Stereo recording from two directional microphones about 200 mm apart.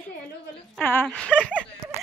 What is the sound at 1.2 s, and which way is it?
Speech, 5° right (ahead or behind).